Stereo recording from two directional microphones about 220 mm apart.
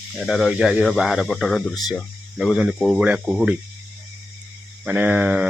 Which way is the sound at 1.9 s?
Centre (ahead or behind).